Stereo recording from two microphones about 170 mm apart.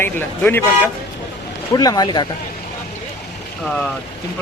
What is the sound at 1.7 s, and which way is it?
Speech, 20° left (ahead or behind).